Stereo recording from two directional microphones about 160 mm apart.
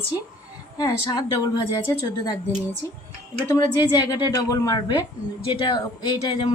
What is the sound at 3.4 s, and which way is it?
Speech, 20° left (ahead or behind).